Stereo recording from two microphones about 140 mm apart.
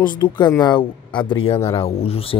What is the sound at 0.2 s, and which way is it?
Speech, 25° left (ahead or behind).